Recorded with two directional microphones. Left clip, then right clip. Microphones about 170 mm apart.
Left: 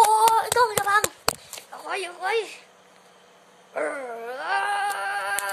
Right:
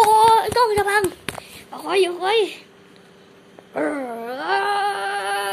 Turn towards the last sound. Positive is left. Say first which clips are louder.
# right 4 dB
turn(degrees=0)  # may be behind; listen again after turning